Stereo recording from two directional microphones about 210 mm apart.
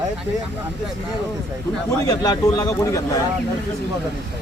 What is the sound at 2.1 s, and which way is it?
Speech, 15° left (ahead or behind).